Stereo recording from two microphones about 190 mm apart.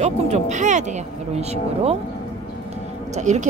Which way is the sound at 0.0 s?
40° right (ahead or behind).